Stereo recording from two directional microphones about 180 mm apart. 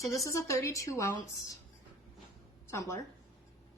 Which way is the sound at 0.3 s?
15° left (ahead or behind).